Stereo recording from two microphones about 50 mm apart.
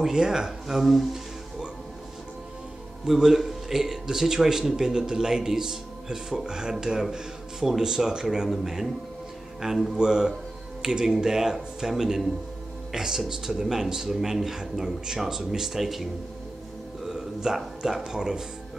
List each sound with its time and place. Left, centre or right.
0.0 s a man's voice: centre
3.1 s a man's voice: centre
9.9 s a man's voice: centre
17.0 s a sound: centre
18.0 s a man's voice: centre